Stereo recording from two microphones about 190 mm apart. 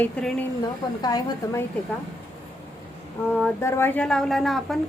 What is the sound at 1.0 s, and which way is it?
Speech, 20° left (ahead or behind).